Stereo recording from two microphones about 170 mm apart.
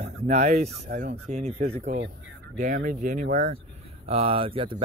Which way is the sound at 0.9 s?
45° right (ahead or behind).